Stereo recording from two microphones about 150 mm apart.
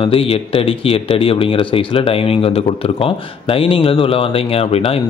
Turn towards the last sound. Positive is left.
turn(degrees=40)  # may be behind; listen again after turning